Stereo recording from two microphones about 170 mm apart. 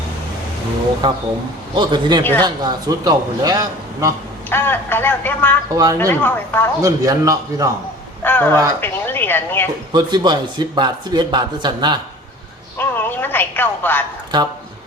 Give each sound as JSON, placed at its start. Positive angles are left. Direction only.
{"t": 1.7, "sound": "speech", "side_deg": -25}
{"t": 4.4, "sound": "speech", "side_deg": 10}
{"t": 5.7, "sound": "speech", "side_deg": -20}
{"t": 6.0, "sound": "speech", "side_deg": 10}
{"t": 6.8, "sound": "speech", "side_deg": -20}
{"t": 8.2, "sound": "a sound", "side_deg": 10}
{"t": 8.8, "sound": "speech", "side_deg": 10}
{"t": 9.9, "sound": "speech", "side_deg": -25}
{"t": 12.7, "sound": "speech", "side_deg": 10}
{"t": 14.3, "sound": "speech", "side_deg": -25}